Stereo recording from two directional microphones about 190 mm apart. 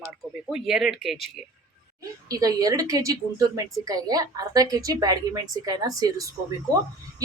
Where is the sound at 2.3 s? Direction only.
20° right (ahead or behind).